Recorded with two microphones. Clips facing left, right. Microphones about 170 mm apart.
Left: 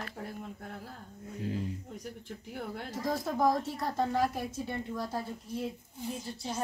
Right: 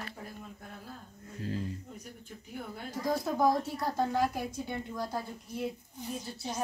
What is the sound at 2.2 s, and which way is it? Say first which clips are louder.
Speech: left 2 dB; 75° left (ahead or behind).